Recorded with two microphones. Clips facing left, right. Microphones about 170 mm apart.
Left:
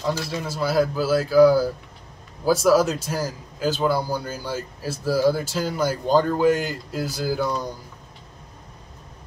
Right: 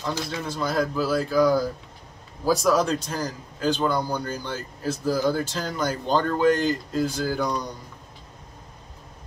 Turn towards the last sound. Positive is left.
turn(degrees=5)  # may be behind; listen again after turning